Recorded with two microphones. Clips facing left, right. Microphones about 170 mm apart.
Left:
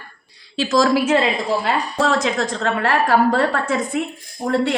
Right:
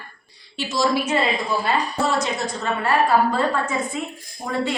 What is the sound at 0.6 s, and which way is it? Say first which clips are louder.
A woman's voice: left 5 dB; 90° left.